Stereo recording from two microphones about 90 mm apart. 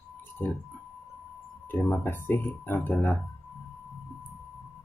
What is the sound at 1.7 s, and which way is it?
Speech, 20° left (ahead or behind).